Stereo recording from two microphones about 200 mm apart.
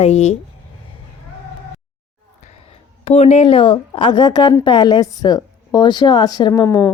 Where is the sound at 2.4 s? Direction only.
30° left (ahead or behind).